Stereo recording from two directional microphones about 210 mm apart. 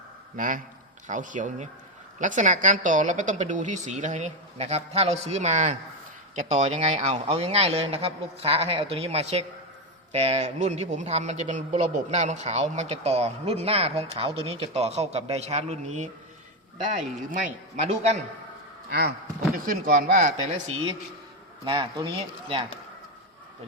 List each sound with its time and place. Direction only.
0.3 s a man's voice: 40° right (ahead or behind)
17.4 s a man's voice: 35° right (ahead or behind)
18.9 s a man's voice: 50° right (ahead or behind)
21.6 s a man's voice: 20° right (ahead or behind)